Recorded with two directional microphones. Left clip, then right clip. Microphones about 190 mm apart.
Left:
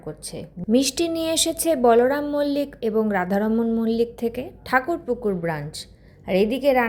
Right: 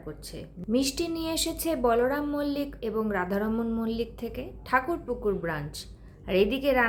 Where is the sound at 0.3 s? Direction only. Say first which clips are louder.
Left 8 dB; 30° left (ahead or behind).